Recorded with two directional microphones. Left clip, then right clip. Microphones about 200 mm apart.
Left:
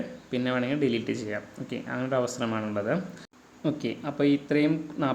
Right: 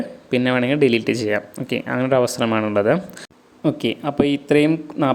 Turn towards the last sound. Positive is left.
turn(degrees=-35)  # may be behind; listen again after turning